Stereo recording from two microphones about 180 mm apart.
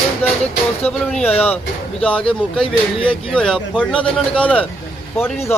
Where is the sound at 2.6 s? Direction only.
30° left (ahead or behind).